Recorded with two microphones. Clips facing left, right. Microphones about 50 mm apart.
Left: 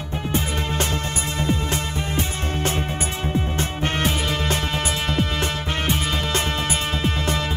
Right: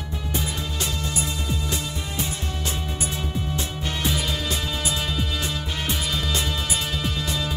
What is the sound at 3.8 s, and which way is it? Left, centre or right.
Music, left.